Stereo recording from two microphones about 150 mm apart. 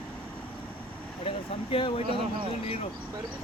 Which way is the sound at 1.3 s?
35° left (ahead or behind).